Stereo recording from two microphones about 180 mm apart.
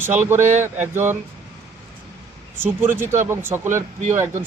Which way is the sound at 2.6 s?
10° right (ahead or behind).